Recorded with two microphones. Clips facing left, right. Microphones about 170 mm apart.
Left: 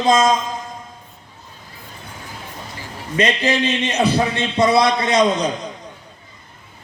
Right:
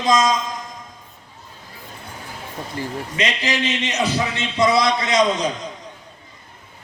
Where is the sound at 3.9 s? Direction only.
55° left (ahead or behind).